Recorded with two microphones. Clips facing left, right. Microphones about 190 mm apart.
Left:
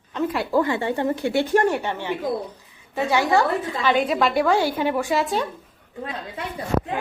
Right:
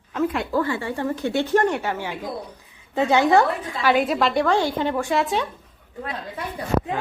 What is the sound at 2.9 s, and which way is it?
A woman's voice, 20° right (ahead or behind).